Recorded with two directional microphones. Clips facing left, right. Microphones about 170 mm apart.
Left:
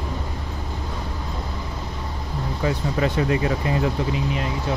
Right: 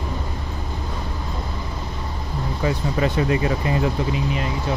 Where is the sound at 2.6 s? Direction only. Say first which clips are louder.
Right 1 dB; 15° right (ahead or behind).